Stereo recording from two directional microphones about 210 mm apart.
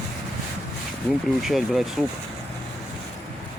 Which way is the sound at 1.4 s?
Centre (ahead or behind).